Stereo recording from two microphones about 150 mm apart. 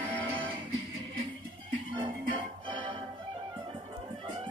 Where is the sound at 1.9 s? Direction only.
30° right (ahead or behind).